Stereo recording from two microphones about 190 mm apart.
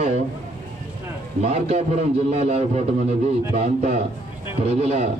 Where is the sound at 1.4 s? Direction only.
35° right (ahead or behind).